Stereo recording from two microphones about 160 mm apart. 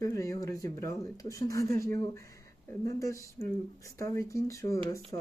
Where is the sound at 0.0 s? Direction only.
20° left (ahead or behind).